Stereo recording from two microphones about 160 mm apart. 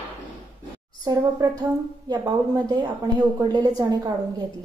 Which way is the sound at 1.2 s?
20° right (ahead or behind).